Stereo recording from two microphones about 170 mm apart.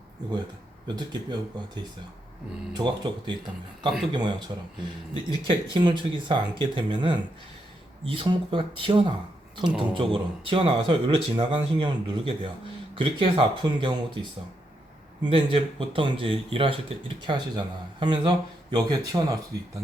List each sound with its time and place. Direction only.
0.9 s speech: 25° right (ahead or behind)
5.5 s speech: 25° right (ahead or behind)